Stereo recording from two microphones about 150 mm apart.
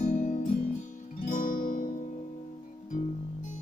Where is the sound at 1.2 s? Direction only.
65° left (ahead or behind).